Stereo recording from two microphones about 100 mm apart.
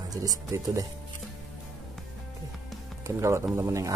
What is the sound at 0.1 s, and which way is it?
Speech, 35° right (ahead or behind).